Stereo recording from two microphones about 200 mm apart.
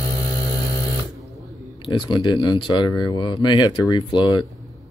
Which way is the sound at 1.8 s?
25° left (ahead or behind).